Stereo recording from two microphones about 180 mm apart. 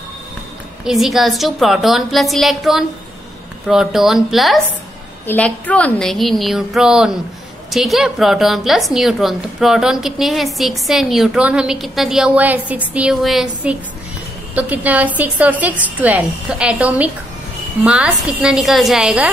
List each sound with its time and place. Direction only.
0.8 s a woman's voice: centre (ahead or behind)
5.2 s a woman's voice: 10° left (ahead or behind)